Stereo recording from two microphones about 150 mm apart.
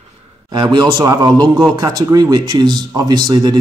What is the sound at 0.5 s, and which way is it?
Speech, 25° right (ahead or behind).